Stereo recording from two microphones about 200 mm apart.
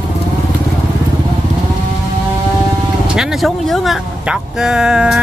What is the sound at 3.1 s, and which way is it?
Speech, centre (ahead or behind).